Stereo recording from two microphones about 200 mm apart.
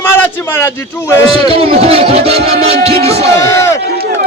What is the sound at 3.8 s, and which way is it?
Run, 50° right (ahead or behind).